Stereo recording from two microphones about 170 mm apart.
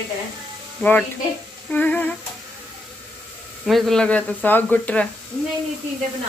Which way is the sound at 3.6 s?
Centre (ahead or behind).